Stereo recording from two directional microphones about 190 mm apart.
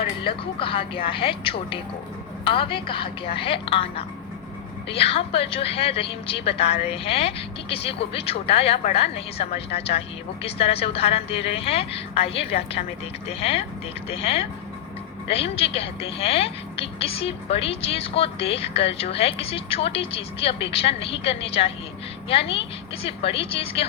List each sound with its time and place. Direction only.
0.0 s a woman's voice: 30° left (ahead or behind)